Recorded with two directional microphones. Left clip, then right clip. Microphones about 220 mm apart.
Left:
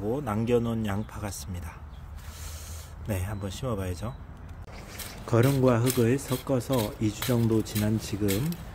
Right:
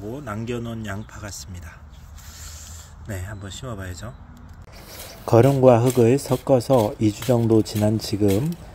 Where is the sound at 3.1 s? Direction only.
15° left (ahead or behind).